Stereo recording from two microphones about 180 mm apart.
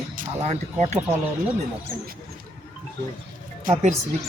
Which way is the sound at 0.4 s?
40° right (ahead or behind).